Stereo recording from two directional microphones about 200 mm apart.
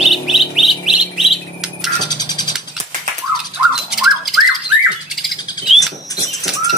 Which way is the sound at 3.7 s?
5° right (ahead or behind).